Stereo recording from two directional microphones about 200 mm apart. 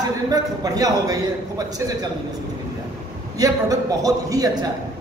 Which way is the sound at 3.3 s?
20° right (ahead or behind).